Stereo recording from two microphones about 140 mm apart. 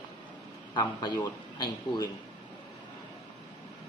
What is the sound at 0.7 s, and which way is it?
A man's voice, 30° left (ahead or behind).